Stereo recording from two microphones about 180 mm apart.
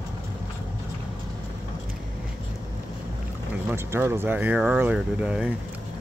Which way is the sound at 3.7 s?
10° right (ahead or behind).